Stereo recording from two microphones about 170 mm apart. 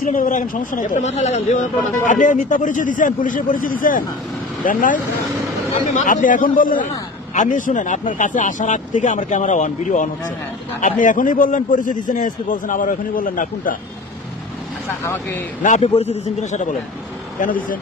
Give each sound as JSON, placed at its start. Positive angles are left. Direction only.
{"t": 0.0, "sound": "a man's voice", "side_deg": 50}
{"t": 15.0, "sound": "speech", "side_deg": 15}
{"t": 15.6, "sound": "a man's voice", "side_deg": 45}